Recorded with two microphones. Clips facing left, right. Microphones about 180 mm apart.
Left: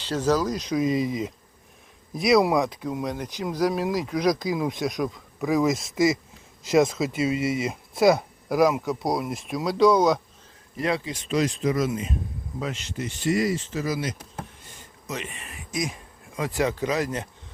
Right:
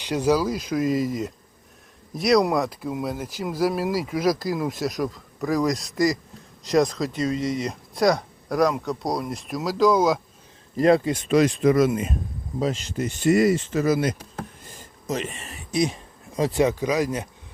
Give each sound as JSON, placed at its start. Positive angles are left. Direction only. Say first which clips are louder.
{"t": 0.0, "sound": "speech", "louder": "right 2 dB", "side_deg": -15}
{"t": 10.8, "sound": "speech", "louder": "right 9 dB", "side_deg": -45}
{"t": 12.5, "sound": "speech", "louder": "right 6 dB", "side_deg": -35}
{"t": 14.8, "sound": "a sound", "louder": "right 6 dB", "side_deg": -40}
{"t": 16.6, "sound": "speech", "louder": "right 3 dB", "side_deg": -15}